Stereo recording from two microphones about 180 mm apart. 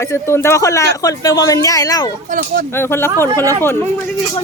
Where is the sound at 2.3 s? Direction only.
50° right (ahead or behind).